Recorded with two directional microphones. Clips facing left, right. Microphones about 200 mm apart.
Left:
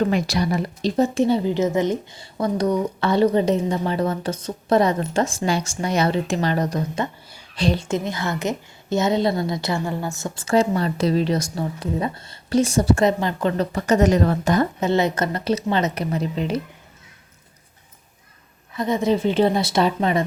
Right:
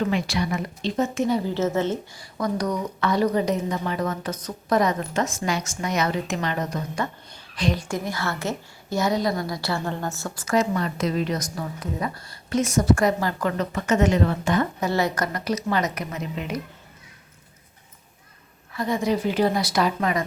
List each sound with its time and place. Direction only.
0.0 s speech: 40° left (ahead or behind)
1.5 s speech: 15° left (ahead or behind)
2.4 s a woman's voice: 30° left (ahead or behind)
14.8 s a woman's voice: 20° left (ahead or behind)
18.7 s a woman's voice: 20° left (ahead or behind)